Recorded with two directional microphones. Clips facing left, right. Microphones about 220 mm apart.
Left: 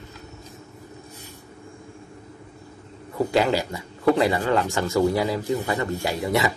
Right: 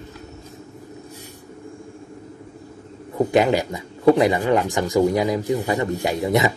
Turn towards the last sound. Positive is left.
turn(degrees=-20)  # may be behind; listen again after turning